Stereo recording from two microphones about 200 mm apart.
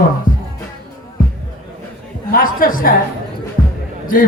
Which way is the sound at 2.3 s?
45° left (ahead or behind).